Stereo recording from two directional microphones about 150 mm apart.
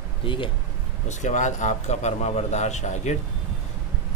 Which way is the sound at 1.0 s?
55° left (ahead or behind).